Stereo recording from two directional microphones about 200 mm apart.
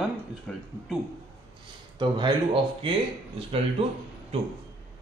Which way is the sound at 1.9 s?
25° right (ahead or behind).